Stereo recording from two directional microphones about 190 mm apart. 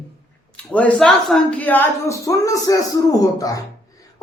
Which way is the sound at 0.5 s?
5° left (ahead or behind).